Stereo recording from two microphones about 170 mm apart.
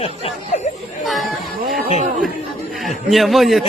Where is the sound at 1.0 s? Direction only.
Centre (ahead or behind).